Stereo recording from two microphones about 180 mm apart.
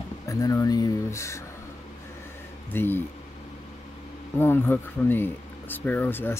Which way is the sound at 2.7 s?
10° left (ahead or behind).